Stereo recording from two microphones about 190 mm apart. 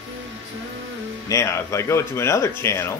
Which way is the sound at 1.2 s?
15° left (ahead or behind).